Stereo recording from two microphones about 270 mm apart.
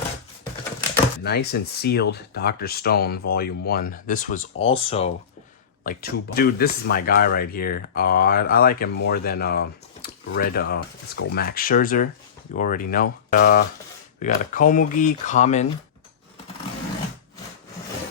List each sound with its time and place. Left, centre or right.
1.2 s speech: left
5.8 s speech: left